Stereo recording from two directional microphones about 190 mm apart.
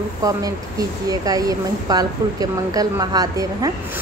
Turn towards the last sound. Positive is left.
turn(degrees=-20)  # may be behind; listen again after turning